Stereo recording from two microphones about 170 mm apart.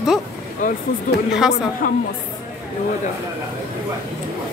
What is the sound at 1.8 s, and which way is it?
Speech, 55° left (ahead or behind).